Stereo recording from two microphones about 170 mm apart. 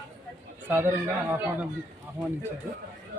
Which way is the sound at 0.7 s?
10° right (ahead or behind).